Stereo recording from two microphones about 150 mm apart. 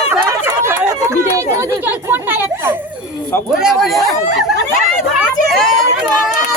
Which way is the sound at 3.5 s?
5° right (ahead or behind).